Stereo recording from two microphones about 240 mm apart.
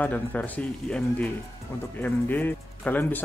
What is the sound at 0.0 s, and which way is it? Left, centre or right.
Speech, centre.